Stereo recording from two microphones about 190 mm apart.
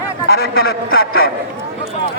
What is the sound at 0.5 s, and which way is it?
Speech, 55° left (ahead or behind).